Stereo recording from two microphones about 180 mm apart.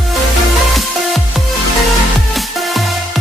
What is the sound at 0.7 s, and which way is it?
Music, centre (ahead or behind).